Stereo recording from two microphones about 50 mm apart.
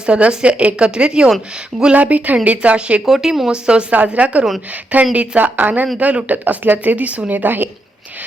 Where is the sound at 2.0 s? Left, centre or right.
Right.